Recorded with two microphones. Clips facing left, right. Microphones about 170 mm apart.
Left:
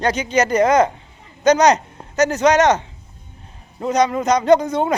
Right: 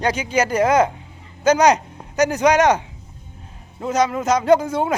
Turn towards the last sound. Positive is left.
turn(degrees=-5)  # may be behind; listen again after turning